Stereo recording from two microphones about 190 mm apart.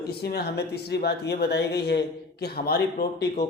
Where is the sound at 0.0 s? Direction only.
60° left (ahead or behind).